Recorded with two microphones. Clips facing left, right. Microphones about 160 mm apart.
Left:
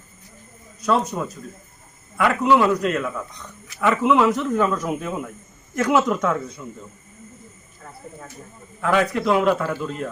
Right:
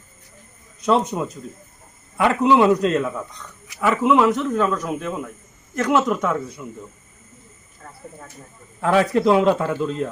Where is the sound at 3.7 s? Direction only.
5° right (ahead or behind).